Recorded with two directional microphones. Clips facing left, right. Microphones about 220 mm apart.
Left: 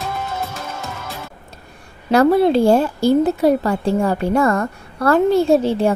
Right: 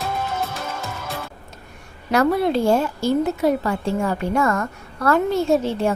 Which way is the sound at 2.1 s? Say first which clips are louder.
Left 5 dB; 30° left (ahead or behind).